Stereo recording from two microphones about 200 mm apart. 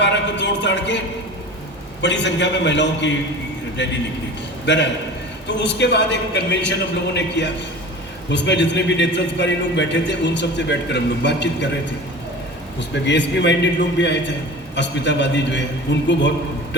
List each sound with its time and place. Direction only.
0.0 s a sound: 60° left (ahead or behind)
2.0 s a man's voice: 60° left (ahead or behind)
13.1 s a man's voice: 60° left (ahead or behind)